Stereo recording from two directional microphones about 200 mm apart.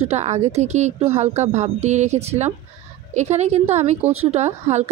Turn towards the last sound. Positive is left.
turn(degrees=-35)  # may be behind; listen again after turning